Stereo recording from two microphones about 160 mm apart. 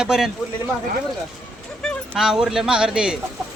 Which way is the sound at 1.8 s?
5° right (ahead or behind).